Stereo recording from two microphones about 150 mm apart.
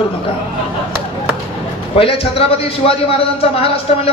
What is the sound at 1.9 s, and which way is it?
A man's voice, 40° left (ahead or behind).